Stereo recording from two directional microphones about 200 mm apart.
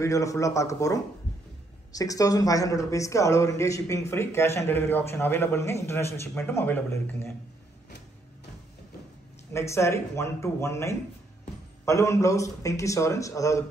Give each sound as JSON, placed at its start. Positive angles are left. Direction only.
{"t": 0.0, "sound": "speech", "side_deg": 15}
{"t": 9.5, "sound": "speech", "side_deg": 15}